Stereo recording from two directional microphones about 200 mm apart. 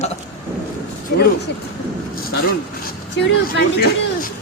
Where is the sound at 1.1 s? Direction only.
55° left (ahead or behind).